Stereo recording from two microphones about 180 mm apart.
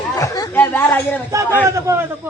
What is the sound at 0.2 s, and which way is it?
Chatter, 20° left (ahead or behind).